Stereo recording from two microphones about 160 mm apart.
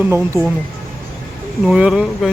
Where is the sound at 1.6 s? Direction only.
5° right (ahead or behind).